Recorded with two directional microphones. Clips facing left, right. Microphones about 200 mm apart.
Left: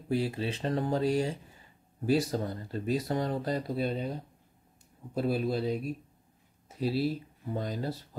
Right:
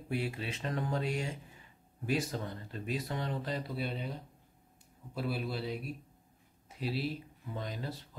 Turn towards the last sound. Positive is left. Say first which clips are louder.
# left 6 dB
turn(degrees=40)  # may be behind; listen again after turning